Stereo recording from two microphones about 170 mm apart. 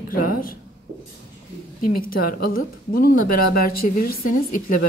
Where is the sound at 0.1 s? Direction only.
55° left (ahead or behind).